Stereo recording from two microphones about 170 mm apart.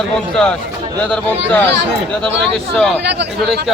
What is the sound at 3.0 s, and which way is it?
Speech, 80° right.